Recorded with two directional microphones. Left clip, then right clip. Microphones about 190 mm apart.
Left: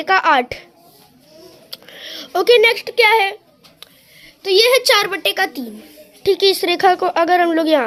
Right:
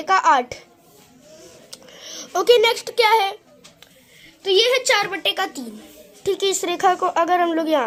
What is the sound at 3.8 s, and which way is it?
A woman's voice, 45° left (ahead or behind).